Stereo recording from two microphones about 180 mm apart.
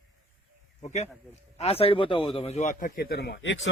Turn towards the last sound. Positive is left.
turn(degrees=75)  # may be behind; listen again after turning